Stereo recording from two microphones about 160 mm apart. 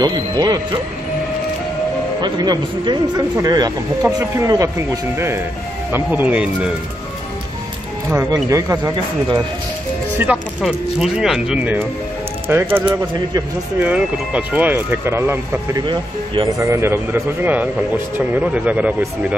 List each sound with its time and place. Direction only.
0.0 s speech: 25° right (ahead or behind)
2.2 s speech: 25° right (ahead or behind); by 6.7 s 5° right (ahead or behind)
8.1 s speech: 15° right (ahead or behind)
10.1 s speech: 10° right (ahead or behind)
13.7 s speech: 5° right (ahead or behind)
15.9 s speech: 30° right (ahead or behind)
16.6 s speech: 15° right (ahead or behind)